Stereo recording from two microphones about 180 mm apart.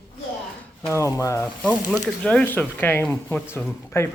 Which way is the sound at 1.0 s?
15° left (ahead or behind).